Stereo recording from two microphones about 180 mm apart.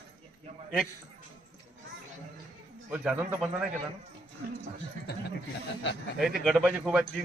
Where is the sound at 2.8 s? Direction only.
10° right (ahead or behind).